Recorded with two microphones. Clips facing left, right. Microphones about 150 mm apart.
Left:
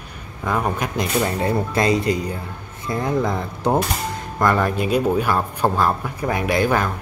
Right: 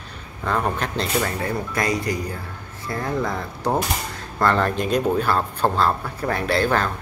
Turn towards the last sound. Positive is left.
turn(degrees=15)  # may be behind; listen again after turning